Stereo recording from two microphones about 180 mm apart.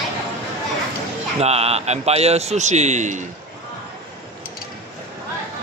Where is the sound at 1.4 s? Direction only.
35° right (ahead or behind).